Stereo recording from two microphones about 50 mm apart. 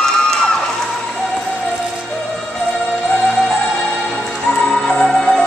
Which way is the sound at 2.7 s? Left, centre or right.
Centre.